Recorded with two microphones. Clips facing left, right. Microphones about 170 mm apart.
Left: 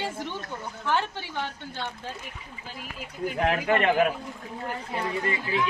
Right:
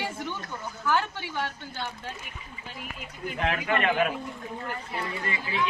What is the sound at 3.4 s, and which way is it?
Speech, 40° left (ahead or behind).